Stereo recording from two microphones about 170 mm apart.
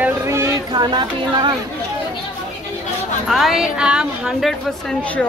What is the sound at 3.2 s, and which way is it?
A woman's voice, centre (ahead or behind).